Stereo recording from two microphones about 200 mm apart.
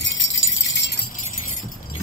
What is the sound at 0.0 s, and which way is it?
Wind chime, 70° left (ahead or behind).